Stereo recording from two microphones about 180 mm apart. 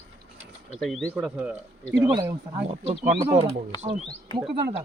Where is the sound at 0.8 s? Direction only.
5° left (ahead or behind).